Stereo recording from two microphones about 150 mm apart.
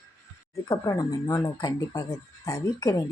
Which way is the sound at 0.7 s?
25° left (ahead or behind).